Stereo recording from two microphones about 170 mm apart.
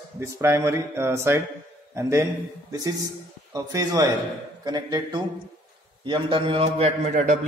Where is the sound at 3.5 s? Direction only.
20° right (ahead or behind).